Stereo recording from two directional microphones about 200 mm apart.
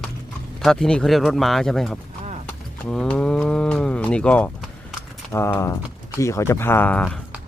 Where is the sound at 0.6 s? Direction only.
Centre (ahead or behind).